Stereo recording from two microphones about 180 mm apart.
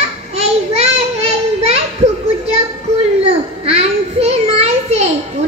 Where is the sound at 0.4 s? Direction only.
35° right (ahead or behind).